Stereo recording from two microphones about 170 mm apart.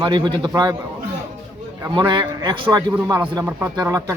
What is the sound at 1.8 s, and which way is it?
A man's voice, 25° right (ahead or behind).